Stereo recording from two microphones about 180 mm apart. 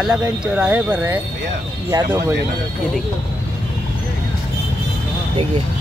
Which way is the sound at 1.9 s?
20° right (ahead or behind).